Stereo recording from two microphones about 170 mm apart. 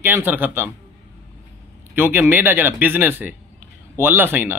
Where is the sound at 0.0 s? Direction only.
10° right (ahead or behind).